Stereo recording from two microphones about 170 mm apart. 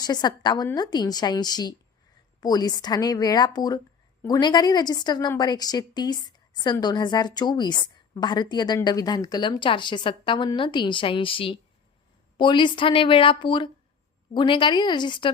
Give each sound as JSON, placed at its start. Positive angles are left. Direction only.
{"t": 0.0, "sound": "a woman's voice", "side_deg": 25}